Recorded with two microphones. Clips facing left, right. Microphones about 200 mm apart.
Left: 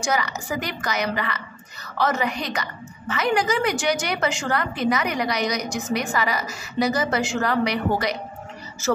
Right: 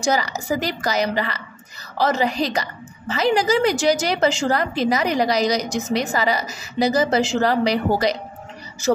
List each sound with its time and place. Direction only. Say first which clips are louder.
0.1 s a woman's voice: right 4 dB; 35° right (ahead or behind)